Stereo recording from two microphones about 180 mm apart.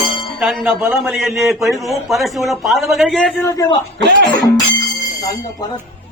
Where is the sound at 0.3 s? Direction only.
5° right (ahead or behind).